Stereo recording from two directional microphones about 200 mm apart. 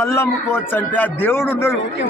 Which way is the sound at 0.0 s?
15° left (ahead or behind).